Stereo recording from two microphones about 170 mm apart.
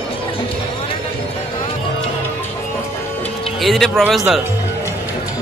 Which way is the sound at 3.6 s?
Centre (ahead or behind).